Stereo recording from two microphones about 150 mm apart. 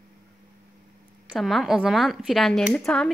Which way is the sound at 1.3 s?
Centre (ahead or behind).